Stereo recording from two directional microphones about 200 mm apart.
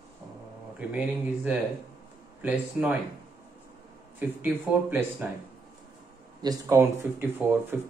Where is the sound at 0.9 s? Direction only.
5° right (ahead or behind).